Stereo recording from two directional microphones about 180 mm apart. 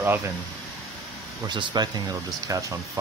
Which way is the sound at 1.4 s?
25° right (ahead or behind).